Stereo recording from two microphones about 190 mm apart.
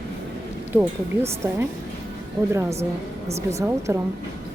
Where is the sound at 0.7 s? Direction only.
10° right (ahead or behind).